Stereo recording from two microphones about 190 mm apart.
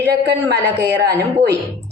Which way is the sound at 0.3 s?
60° right (ahead or behind).